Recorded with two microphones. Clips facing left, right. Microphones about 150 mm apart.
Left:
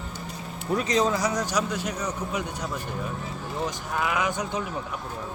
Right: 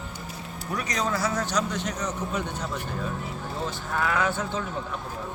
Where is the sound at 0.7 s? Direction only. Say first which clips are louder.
Left 5 dB; 25° left (ahead or behind).